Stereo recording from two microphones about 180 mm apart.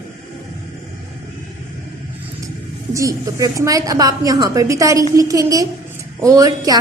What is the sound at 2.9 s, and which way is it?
A woman's voice, 15° right (ahead or behind).